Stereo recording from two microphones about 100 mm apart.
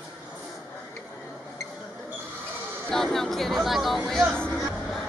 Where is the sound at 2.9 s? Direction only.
5° left (ahead or behind).